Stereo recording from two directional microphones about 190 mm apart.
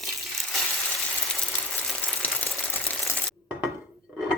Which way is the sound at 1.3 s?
5° left (ahead or behind).